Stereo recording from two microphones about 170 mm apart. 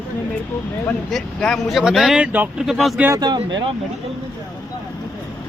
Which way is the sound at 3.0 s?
20° right (ahead or behind).